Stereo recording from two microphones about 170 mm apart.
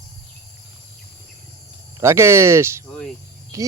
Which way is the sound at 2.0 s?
15° right (ahead or behind).